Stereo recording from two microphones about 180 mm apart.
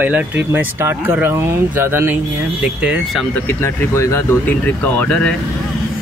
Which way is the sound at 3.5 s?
15° left (ahead or behind).